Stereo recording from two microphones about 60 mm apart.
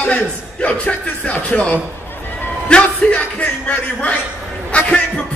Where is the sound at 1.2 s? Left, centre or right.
Left.